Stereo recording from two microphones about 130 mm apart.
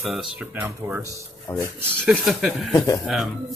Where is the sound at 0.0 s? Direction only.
5° right (ahead or behind).